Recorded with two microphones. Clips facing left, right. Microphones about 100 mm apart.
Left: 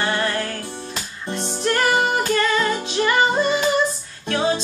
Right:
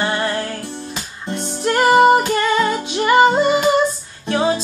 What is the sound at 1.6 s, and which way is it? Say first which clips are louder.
Music: right 7 dB; 25° right (ahead or behind).